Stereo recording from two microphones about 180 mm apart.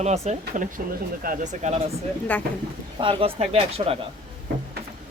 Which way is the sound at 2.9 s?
30° right (ahead or behind).